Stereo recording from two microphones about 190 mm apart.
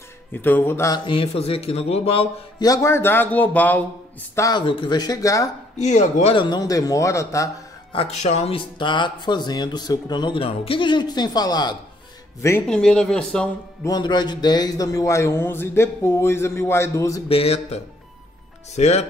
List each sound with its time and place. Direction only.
0.3 s speech: 10° left (ahead or behind); by 2.7 s 30° left (ahead or behind)
2.7 s a man's voice: 15° left (ahead or behind)
4.4 s speech: 20° left (ahead or behind)
5.8 s speech: 40° left (ahead or behind)
6.3 s a man's voice: 25° left (ahead or behind)
7.9 s a man's voice: 35° left (ahead or behind); by 12.6 s 15° left (ahead or behind)
12.6 s speech: 5° left (ahead or behind)
13.8 s a man's voice: 20° left (ahead or behind)
17.3 s speech: 30° left (ahead or behind)